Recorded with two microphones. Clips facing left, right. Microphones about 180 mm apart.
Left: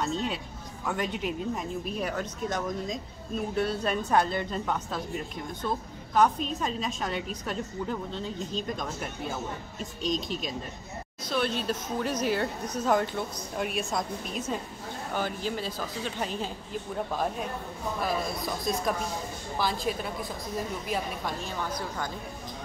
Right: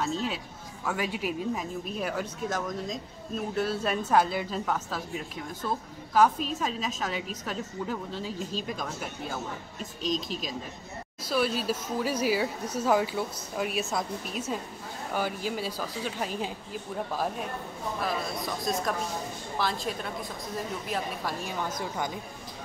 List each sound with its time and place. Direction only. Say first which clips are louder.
0.0 s a woman's voice: even; centre (ahead or behind)
21.5 s a woman's voice: right 1 dB; 20° right (ahead or behind)